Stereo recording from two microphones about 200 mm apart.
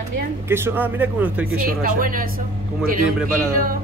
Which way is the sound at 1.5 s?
45° right (ahead or behind).